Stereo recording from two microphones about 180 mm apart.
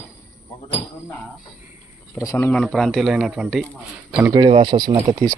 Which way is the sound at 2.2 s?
15° left (ahead or behind).